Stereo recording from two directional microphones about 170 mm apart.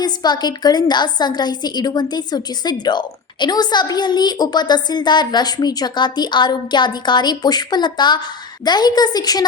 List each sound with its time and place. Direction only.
0.0 s a woman's voice: 25° left (ahead or behind)